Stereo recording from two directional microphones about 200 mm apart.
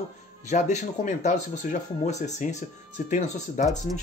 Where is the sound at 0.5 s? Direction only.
35° left (ahead or behind).